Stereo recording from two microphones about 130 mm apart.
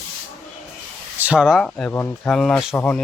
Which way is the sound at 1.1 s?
10° right (ahead or behind).